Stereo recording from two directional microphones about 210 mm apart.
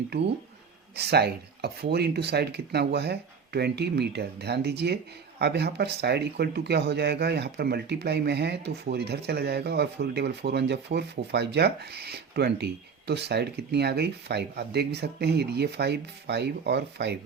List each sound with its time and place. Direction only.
0.9 s speech: 50° right (ahead or behind)